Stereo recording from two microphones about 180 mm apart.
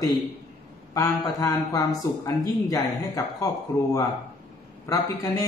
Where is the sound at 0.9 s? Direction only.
20° left (ahead or behind).